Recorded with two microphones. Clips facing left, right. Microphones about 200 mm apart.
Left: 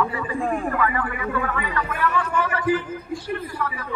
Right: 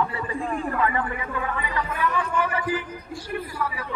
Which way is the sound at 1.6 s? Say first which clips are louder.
Left 2 dB; 15° right (ahead or behind).